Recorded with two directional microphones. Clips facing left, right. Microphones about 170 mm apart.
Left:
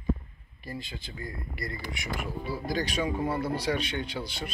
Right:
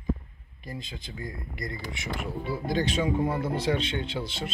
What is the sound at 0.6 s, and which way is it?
Speech, 20° right (ahead or behind).